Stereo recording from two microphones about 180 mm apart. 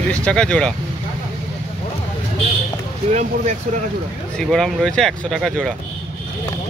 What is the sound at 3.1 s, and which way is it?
Speech, 40° right (ahead or behind).